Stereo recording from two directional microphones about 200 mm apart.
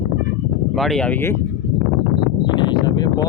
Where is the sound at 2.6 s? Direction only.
20° left (ahead or behind).